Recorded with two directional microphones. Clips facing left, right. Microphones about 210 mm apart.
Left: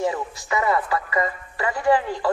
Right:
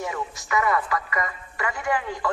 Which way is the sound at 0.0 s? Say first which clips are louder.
Left 6 dB; 30° left (ahead or behind).